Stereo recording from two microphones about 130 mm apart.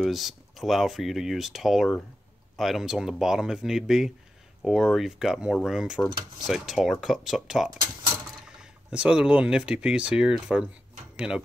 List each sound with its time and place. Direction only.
0.0 s speech: centre (ahead or behind)